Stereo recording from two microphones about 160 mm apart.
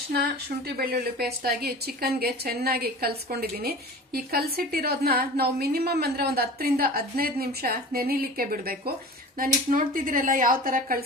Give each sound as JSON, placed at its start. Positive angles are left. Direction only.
{"t": 0.1, "sound": "a woman's voice", "side_deg": -85}
{"t": 9.4, "sound": "speech", "side_deg": -55}